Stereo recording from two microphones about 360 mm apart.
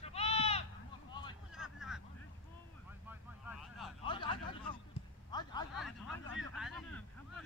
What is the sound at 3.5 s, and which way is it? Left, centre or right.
Vehicle, centre.